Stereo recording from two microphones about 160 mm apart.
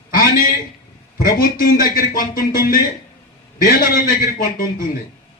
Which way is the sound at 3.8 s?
60° left (ahead or behind).